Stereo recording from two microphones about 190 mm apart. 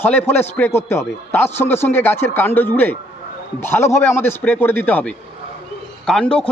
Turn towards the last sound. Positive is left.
turn(degrees=5)  # may be behind; listen again after turning